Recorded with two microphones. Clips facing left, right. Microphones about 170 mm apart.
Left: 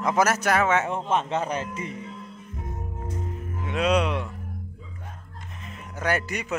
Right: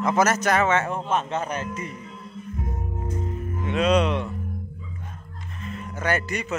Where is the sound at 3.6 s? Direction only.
10° left (ahead or behind).